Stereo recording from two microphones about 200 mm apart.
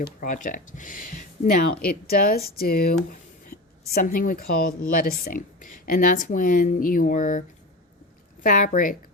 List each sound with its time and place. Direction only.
0.0 s speech: 45° left (ahead or behind)
8.4 s speech: 40° left (ahead or behind)